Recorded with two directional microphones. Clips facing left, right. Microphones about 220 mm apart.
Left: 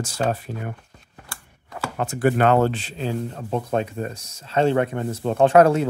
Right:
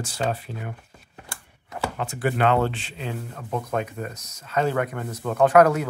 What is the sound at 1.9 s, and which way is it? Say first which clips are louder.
Speech: left 7 dB; 45° left (ahead or behind).